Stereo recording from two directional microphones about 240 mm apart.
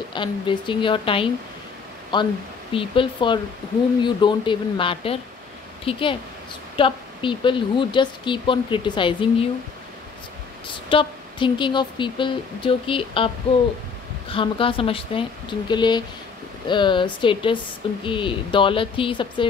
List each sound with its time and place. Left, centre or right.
0.1 s a woman's voice: centre
10.9 s a woman's voice: left
14.3 s a woman's voice: left